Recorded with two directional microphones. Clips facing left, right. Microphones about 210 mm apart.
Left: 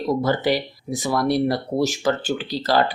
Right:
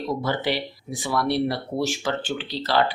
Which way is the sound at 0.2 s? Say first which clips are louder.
Left 5 dB; 45° left (ahead or behind).